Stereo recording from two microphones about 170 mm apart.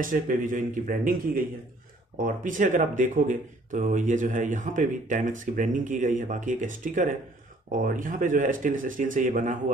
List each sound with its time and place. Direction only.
0.0 s speech: 50° right (ahead or behind)